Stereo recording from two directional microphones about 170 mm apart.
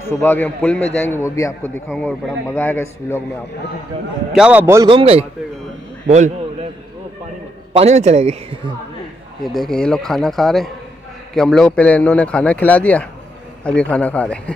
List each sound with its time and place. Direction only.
0.0 s a man's voice: 15° left (ahead or behind)
1.9 s a man's voice: 5° left (ahead or behind)
4.4 s a man's voice: 10° right (ahead or behind)
4.8 s a man's voice: 30° right (ahead or behind)
6.0 s a sound: 45° right (ahead or behind)
7.7 s a man's voice: 40° right (ahead or behind)
9.4 s a man's voice: centre (ahead or behind)